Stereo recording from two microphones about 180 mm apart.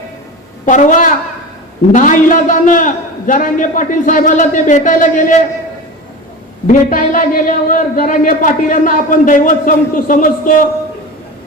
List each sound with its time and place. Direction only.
0.6 s a man's voice: 45° left (ahead or behind)
6.7 s a man's voice: 50° left (ahead or behind)